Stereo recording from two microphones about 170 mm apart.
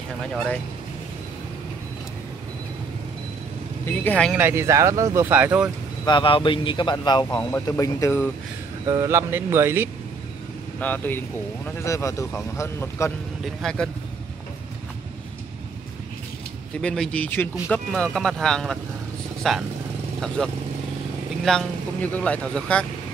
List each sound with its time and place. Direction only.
3.8 s speech: 10° left (ahead or behind)
4.3 s speech: 10° right (ahead or behind)
6.0 s speech: 30° left (ahead or behind)
8.8 s speech: 20° right (ahead or behind)
10.8 s speech: 10° left (ahead or behind)
13.6 s speech: 5° left (ahead or behind)
16.8 s speech: 5° left (ahead or behind)